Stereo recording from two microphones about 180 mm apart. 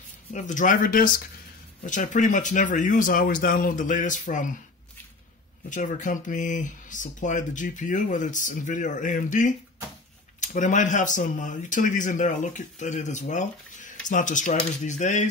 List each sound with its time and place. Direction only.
0.3 s speech: 45° left (ahead or behind)
5.7 s speech: 45° left (ahead or behind)